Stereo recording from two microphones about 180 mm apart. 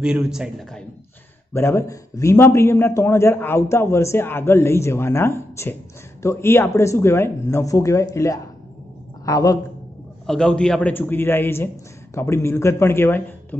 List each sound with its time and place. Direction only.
0.0 s a man's voice: 5° right (ahead or behind)
1.5 s a man's voice: 15° left (ahead or behind)
10.2 s a man's voice: 5° left (ahead or behind)